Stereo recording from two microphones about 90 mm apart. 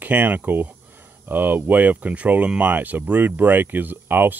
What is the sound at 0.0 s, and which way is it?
Speech, 20° right (ahead or behind).